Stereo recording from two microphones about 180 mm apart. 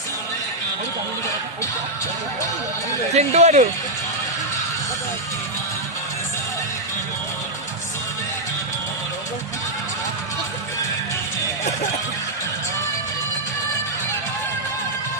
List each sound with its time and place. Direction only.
3.2 s speech: 40° right (ahead or behind)